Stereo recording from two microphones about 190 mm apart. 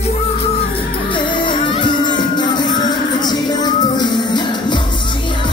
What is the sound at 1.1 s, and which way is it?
Music, 25° left (ahead or behind).